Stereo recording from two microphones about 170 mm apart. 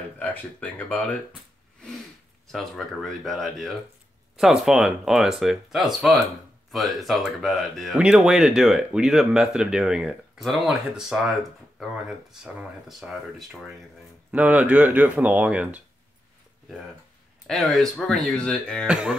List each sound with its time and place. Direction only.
0.2 s speech: 10° left (ahead or behind)
2.4 s speech: centre (ahead or behind)
12.8 s speech: centre (ahead or behind)
17.5 s speech: centre (ahead or behind)
18.9 s speech: 5° right (ahead or behind)